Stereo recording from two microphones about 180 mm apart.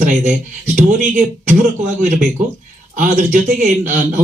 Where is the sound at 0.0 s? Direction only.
45° right (ahead or behind).